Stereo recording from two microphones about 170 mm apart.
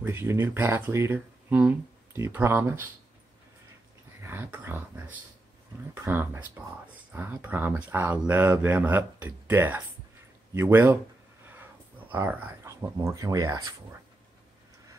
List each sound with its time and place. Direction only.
0.0 s speech: 15° right (ahead or behind)
4.2 s speech: 15° right (ahead or behind)